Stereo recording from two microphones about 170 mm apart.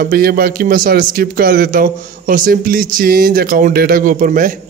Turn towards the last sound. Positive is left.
turn(degrees=-50)  # may be behind; listen again after turning